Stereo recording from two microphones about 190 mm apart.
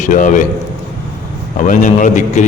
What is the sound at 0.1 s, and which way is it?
Speech, 40° left (ahead or behind).